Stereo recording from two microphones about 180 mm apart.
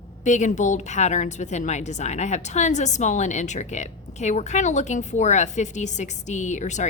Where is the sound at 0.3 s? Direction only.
40° left (ahead or behind).